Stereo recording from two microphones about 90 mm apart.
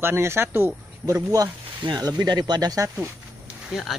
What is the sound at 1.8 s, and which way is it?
Speech, 50° right (ahead or behind).